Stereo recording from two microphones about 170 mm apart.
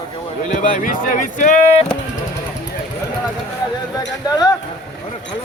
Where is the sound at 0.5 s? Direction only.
50° left (ahead or behind).